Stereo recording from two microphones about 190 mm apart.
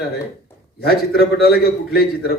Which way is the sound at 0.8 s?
55° left (ahead or behind).